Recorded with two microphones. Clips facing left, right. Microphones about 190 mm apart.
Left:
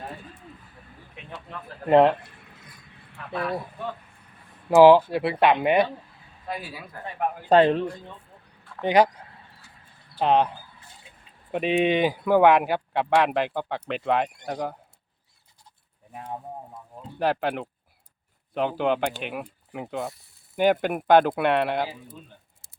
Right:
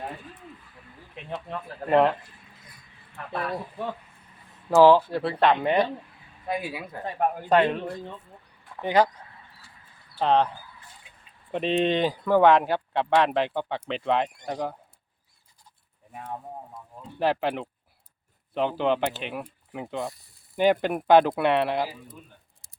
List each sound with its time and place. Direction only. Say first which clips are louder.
1.9 s speech: left 3 dB; 20° left (ahead or behind)
4.7 s speech: left 3 dB; 15° left (ahead or behind)
6.5 s a man's voice: right 4 dB; 20° right (ahead or behind)
7.0 s speech: right 2 dB; 35° right (ahead or behind)
7.5 s a man's voice: left 4 dB; 35° left (ahead or behind)
8.8 s speech: left 2 dB; 15° left (ahead or behind)
10.2 s speech: left 1 dB; 10° left (ahead or behind)
11.5 s speech: left 2 dB; 10° left (ahead or behind)
17.2 s speech: even; centre (ahead or behind)